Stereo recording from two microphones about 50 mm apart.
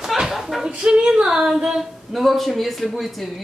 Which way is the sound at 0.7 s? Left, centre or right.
Centre.